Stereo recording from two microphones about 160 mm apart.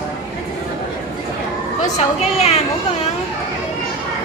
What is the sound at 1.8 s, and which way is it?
Speech, 45° left (ahead or behind).